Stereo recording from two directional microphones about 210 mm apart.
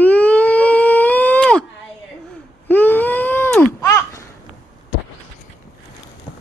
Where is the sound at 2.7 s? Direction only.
10° left (ahead or behind).